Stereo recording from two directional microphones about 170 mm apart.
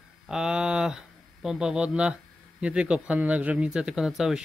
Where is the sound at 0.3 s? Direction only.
5° right (ahead or behind).